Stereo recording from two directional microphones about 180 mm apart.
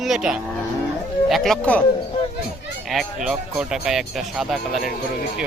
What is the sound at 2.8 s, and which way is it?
Speech, centre (ahead or behind).